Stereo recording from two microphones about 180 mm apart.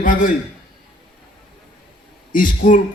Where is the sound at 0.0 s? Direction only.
50° left (ahead or behind).